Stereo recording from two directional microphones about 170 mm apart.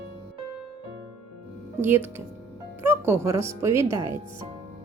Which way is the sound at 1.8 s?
10° right (ahead or behind).